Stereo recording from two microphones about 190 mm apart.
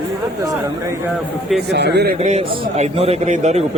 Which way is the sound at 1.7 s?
60° right (ahead or behind).